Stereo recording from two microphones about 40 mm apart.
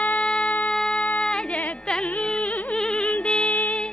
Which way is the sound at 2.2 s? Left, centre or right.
Left.